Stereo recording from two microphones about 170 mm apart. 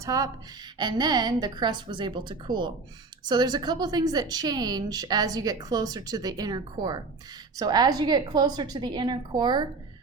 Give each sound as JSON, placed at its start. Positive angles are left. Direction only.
{"t": 0.0, "sound": "a woman's voice", "side_deg": -20}